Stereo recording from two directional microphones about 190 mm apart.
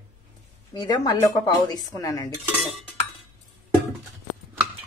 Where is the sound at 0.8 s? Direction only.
20° left (ahead or behind).